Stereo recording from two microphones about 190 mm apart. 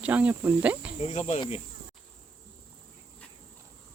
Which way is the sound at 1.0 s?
35° left (ahead or behind).